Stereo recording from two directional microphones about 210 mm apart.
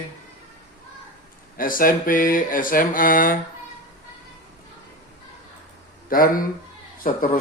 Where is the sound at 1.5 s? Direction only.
40° left (ahead or behind).